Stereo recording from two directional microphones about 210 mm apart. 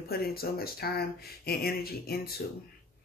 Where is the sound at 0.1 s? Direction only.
45° left (ahead or behind).